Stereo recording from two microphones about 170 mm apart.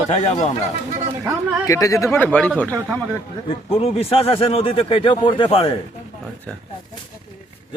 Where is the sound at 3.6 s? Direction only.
35° left (ahead or behind).